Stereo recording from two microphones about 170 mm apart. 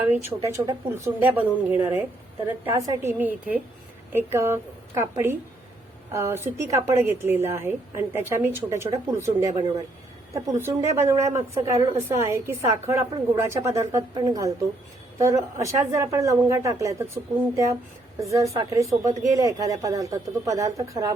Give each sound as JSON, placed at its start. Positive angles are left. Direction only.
{"t": 0.0, "sound": "a woman's voice", "side_deg": -15}
{"t": 18.2, "sound": "speech", "side_deg": -20}